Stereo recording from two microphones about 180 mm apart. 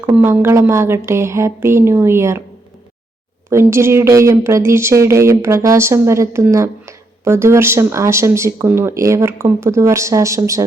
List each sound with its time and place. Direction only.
0.0 s speech: 10° right (ahead or behind)
3.5 s speech: 15° right (ahead or behind)